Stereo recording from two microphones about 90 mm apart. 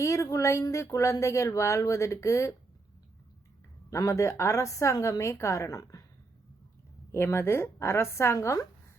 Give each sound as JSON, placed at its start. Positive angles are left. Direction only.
{"t": 0.0, "sound": "speech", "side_deg": 35}
{"t": 3.8, "sound": "speech", "side_deg": 35}
{"t": 7.1, "sound": "a woman's voice", "side_deg": 30}